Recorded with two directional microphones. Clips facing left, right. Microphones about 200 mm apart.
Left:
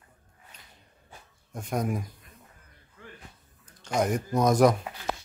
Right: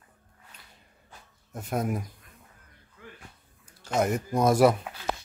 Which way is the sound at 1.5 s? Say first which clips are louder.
Even; 5° right (ahead or behind).